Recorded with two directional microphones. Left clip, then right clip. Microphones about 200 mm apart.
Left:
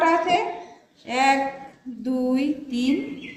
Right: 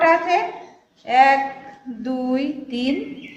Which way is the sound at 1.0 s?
30° right (ahead or behind).